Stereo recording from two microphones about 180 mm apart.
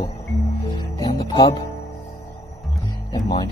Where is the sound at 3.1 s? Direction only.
25° left (ahead or behind).